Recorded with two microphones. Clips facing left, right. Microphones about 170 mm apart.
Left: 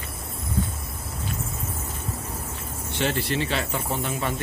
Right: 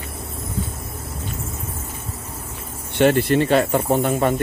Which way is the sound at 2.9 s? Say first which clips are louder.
Right 10 dB; 55° right (ahead or behind).